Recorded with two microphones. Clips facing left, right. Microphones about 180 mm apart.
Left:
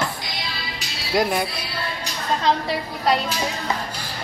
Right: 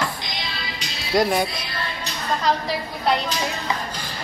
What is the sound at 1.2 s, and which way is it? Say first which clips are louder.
Speech: right 2 dB; 5° left (ahead or behind).